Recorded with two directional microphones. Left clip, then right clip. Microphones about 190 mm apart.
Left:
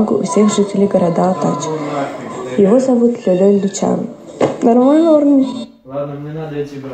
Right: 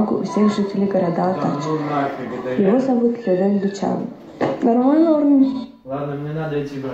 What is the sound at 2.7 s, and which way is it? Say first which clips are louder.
A woman's voice: left 6 dB; 45° left (ahead or behind).